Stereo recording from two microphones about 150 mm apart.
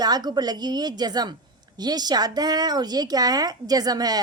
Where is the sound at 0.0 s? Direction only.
25° right (ahead or behind).